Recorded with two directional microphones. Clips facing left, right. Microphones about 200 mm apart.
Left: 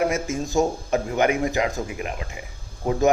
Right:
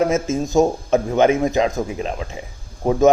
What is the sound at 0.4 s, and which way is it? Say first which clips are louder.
A man's voice: right 4 dB; 20° right (ahead or behind).